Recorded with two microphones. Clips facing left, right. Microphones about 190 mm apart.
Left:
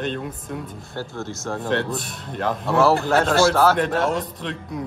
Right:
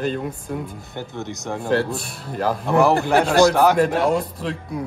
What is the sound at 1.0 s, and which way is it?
Speech, 20° right (ahead or behind).